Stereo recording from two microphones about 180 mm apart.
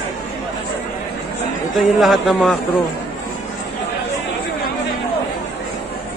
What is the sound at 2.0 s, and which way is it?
Speech, centre (ahead or behind).